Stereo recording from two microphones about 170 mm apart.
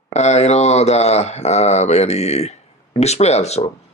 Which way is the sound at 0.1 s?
40° left (ahead or behind).